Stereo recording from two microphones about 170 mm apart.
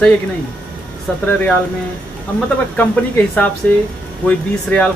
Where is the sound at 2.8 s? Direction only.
10° left (ahead or behind).